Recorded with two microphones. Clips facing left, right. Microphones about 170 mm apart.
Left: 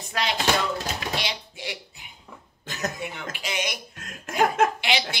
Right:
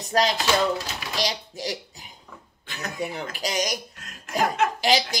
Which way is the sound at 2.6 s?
45° left (ahead or behind).